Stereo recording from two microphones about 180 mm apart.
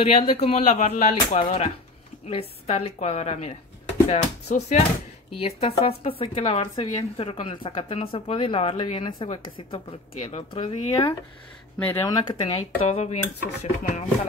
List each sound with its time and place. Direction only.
0.0 s speech: 35° left (ahead or behind)
11.8 s speech: 15° left (ahead or behind)
12.8 s speech: 40° left (ahead or behind)